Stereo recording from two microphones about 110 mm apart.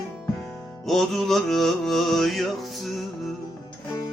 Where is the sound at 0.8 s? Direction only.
Centre (ahead or behind).